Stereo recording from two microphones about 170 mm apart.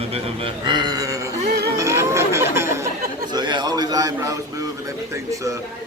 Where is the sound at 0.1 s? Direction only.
30° right (ahead or behind).